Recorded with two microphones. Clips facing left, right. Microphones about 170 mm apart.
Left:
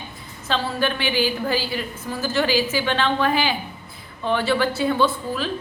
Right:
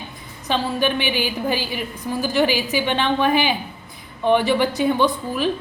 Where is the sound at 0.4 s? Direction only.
15° right (ahead or behind).